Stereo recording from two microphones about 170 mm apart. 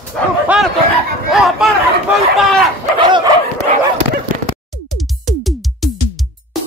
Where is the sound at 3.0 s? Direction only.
25° right (ahead or behind).